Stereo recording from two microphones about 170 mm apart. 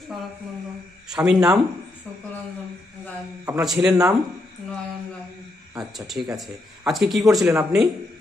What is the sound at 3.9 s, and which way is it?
Speech, 20° right (ahead or behind).